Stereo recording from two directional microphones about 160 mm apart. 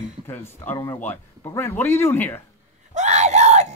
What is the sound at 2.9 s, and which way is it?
Screaming, 45° right (ahead or behind).